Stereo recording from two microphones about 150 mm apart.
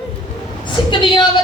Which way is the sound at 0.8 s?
35° left (ahead or behind).